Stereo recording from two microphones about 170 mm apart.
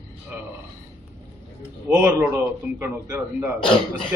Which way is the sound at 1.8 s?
15° right (ahead or behind).